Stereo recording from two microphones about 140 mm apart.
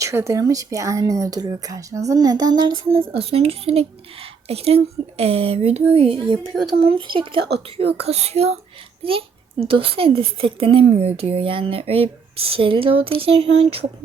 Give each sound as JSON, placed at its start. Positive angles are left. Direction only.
{"t": 0.0, "sound": "speech", "side_deg": -20}
{"t": 3.0, "sound": "speech", "side_deg": -45}